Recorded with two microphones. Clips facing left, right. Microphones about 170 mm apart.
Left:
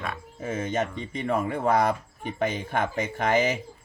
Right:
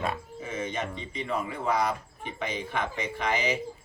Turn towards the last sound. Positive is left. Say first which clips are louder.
# left 5 dB
turn(degrees=50)  # may be behind; listen again after turning